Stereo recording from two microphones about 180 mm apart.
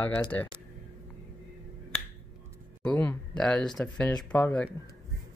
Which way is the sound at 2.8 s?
10° left (ahead or behind).